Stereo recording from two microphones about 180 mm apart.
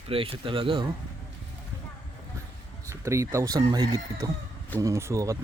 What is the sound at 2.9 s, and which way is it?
Speech, 15° right (ahead or behind).